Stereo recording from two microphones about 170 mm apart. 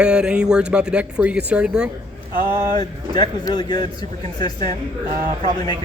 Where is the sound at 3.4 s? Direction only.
25° left (ahead or behind).